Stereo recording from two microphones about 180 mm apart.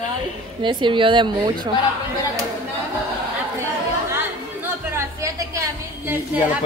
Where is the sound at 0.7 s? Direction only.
25° right (ahead or behind).